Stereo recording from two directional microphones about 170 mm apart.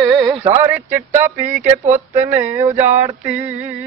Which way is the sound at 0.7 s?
10° right (ahead or behind).